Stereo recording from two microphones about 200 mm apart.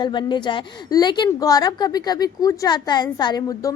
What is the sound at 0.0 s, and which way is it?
A woman's voice, 25° left (ahead or behind).